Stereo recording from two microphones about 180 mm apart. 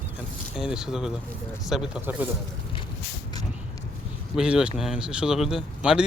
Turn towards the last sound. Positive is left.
turn(degrees=0)  # may be behind; listen again after turning